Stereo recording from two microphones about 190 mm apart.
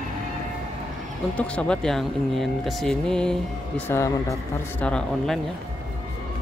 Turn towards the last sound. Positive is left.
turn(degrees=5)  # may be behind; listen again after turning